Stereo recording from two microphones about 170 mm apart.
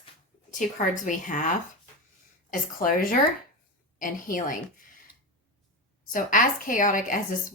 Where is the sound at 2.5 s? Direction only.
55° left (ahead or behind).